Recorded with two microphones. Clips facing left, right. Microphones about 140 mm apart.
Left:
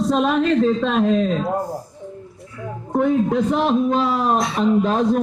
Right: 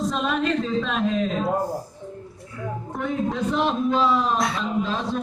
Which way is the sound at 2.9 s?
50° left (ahead or behind).